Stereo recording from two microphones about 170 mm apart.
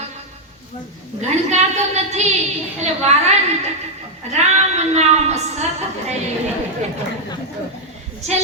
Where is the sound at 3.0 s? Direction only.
40° right (ahead or behind).